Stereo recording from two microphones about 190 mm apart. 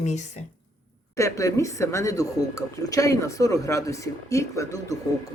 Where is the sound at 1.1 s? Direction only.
15° left (ahead or behind).